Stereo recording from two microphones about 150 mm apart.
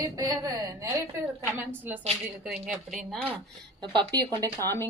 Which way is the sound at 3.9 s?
30° right (ahead or behind).